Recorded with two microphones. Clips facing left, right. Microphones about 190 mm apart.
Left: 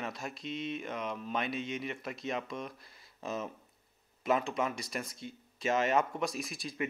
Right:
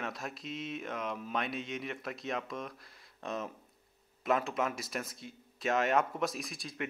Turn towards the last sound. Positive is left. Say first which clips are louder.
# left 3 dB
turn(degrees=0)  # may be behind; listen again after turning